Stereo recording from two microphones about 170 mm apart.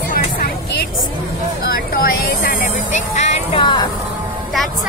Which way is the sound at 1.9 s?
60° left (ahead or behind).